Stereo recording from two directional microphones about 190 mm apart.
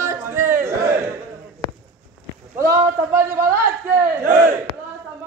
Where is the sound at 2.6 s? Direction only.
15° right (ahead or behind).